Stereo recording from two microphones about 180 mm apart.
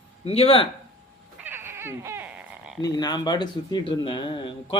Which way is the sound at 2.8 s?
20° left (ahead or behind).